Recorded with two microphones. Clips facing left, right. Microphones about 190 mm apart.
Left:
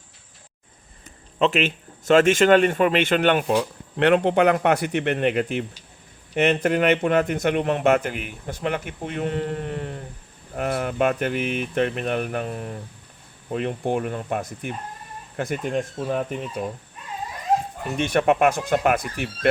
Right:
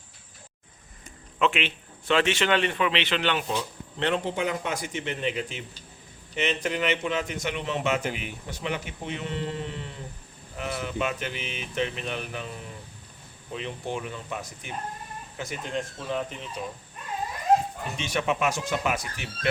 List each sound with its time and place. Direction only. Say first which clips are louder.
1.4 s a man's voice: left 5 dB; 40° left (ahead or behind)
17.9 s a man's voice: left 9 dB; 55° left (ahead or behind)